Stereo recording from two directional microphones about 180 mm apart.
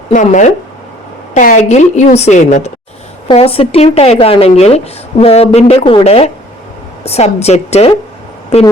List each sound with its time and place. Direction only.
0.1 s speech: 45° left (ahead or behind)